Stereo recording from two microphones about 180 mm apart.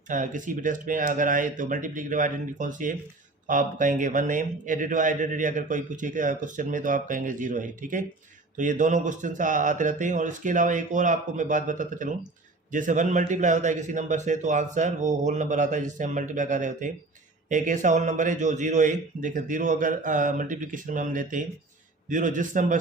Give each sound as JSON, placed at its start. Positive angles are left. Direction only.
{"t": 0.1, "sound": "speech", "side_deg": -45}